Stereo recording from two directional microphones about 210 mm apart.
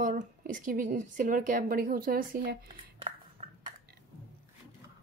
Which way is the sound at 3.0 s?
25° right (ahead or behind).